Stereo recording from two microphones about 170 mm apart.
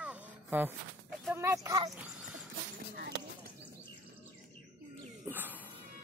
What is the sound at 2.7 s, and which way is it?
Speech, 60° right (ahead or behind).